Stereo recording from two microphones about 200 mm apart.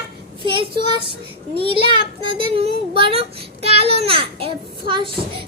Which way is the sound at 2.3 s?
25° right (ahead or behind).